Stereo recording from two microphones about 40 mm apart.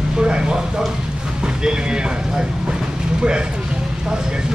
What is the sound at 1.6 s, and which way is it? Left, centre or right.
Speech, right.